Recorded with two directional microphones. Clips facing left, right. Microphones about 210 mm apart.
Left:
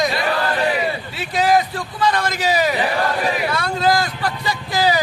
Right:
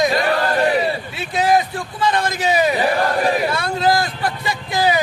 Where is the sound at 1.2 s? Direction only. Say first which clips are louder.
Even; 25° right (ahead or behind).